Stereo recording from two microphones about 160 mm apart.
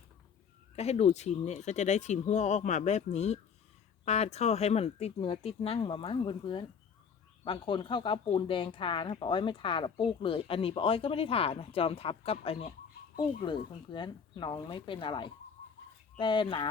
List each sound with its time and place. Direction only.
0.8 s speech: 40° left (ahead or behind)